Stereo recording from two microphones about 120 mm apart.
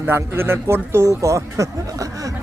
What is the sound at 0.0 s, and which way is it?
Speech, 20° right (ahead or behind).